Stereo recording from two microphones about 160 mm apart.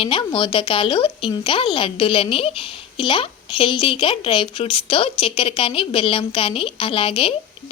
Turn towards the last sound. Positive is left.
turn(degrees=35)  # may be behind; listen again after turning